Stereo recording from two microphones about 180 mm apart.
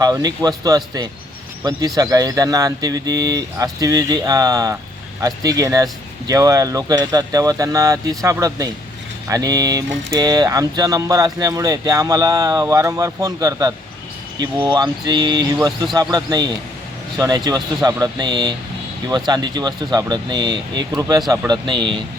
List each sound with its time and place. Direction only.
0.0 s speech: 20° right (ahead or behind)